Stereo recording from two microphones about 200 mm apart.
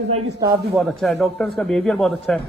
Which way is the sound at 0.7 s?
Centre (ahead or behind).